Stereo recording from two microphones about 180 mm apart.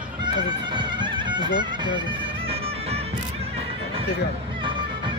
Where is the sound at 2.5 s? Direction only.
35° right (ahead or behind).